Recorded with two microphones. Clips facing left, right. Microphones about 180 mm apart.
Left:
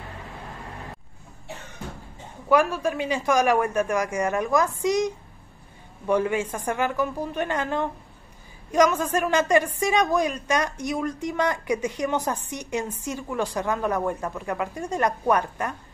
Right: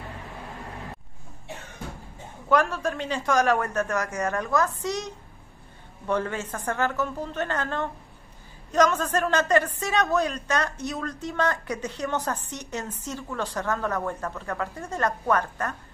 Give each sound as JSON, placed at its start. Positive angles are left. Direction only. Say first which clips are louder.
{"t": 2.5, "sound": "a woman's voice", "louder": "left 2 dB", "side_deg": 10}